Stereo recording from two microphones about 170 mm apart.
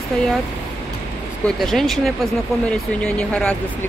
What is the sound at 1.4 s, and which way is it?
Speech, centre (ahead or behind).